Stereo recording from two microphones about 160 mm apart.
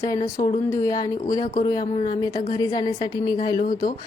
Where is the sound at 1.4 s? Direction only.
55° left (ahead or behind).